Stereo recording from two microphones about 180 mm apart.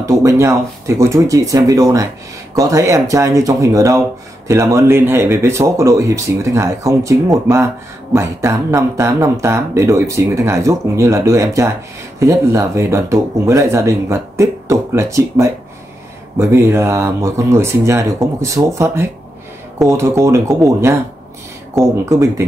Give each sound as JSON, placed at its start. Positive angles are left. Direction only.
{"t": 0.0, "sound": "speech", "side_deg": -15}